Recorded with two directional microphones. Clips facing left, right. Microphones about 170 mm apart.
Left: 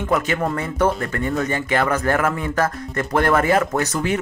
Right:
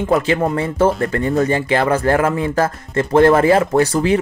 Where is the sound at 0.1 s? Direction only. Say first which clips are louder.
Right 4 dB; 30° right (ahead or behind).